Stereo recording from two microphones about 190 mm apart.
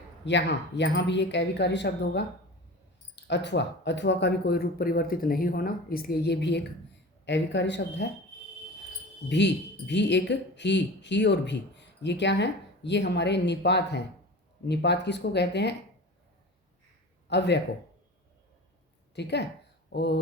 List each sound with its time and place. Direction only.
0.3 s speech: 70° left (ahead or behind)
3.2 s speech: 65° left (ahead or behind)
9.3 s speech: 65° left (ahead or behind)
17.2 s speech: 65° left (ahead or behind)
19.1 s speech: 65° left (ahead or behind)